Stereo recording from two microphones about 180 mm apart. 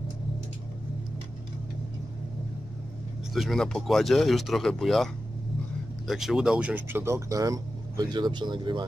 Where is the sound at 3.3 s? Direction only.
Centre (ahead or behind).